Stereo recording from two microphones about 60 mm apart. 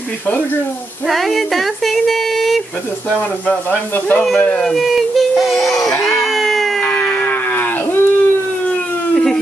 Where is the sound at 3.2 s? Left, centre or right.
Left.